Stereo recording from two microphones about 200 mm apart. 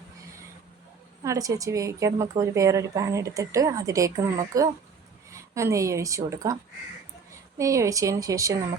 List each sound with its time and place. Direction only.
1.2 s a woman's voice: 15° right (ahead or behind)
7.6 s a woman's voice: 15° right (ahead or behind)